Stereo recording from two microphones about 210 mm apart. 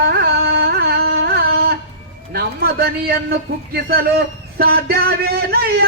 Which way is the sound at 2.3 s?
45° right (ahead or behind).